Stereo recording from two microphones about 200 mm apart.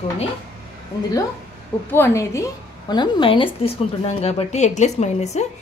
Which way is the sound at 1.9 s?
15° left (ahead or behind).